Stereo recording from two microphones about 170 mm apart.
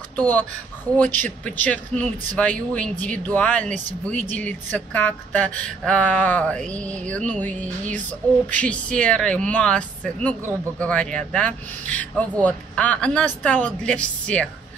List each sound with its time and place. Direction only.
0.1 s speech: 10° left (ahead or behind)